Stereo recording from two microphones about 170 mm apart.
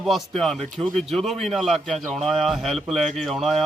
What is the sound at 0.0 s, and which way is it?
A man's voice, centre (ahead or behind).